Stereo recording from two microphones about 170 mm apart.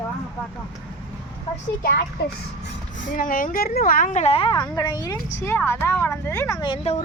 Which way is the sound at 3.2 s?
50° left (ahead or behind).